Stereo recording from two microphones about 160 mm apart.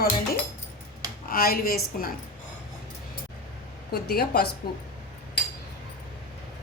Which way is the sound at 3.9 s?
80° left.